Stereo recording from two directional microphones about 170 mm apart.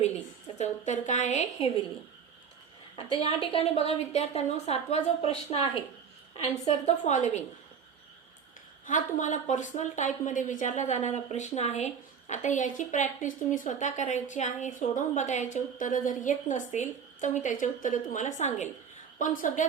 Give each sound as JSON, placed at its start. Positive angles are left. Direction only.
{"t": 0.6, "sound": "a woman's voice", "side_deg": 45}
{"t": 3.2, "sound": "a woman's voice", "side_deg": 35}
{"t": 8.9, "sound": "a woman's voice", "side_deg": 50}